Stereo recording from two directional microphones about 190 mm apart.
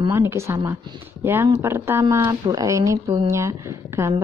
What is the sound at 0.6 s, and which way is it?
Speech, 25° right (ahead or behind).